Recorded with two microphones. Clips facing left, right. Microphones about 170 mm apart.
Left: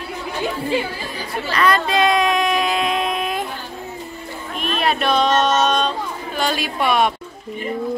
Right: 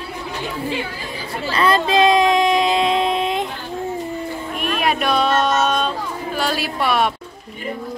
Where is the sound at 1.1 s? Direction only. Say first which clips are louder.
Right 1 dB; 25° right (ahead or behind).